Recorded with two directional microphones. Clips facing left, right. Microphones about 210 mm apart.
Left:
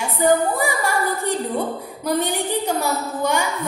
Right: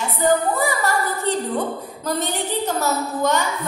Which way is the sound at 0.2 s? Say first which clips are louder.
Left 1 dB; 15° left (ahead or behind).